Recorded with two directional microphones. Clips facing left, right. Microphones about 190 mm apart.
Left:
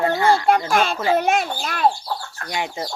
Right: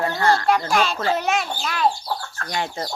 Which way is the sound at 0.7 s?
55° left (ahead or behind).